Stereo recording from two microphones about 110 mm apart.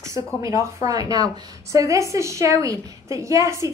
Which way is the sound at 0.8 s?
35° right (ahead or behind).